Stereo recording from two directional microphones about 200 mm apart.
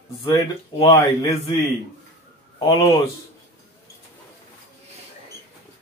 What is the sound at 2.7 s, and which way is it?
Speech, 15° left (ahead or behind).